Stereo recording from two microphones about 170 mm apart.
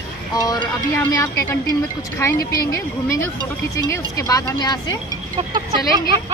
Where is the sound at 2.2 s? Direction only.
15° left (ahead or behind).